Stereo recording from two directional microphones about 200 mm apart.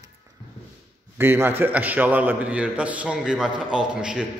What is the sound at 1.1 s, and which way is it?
A man's voice, 10° right (ahead or behind).